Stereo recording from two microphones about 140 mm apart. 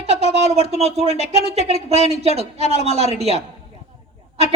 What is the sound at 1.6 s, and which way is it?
Speech, 45° right (ahead or behind).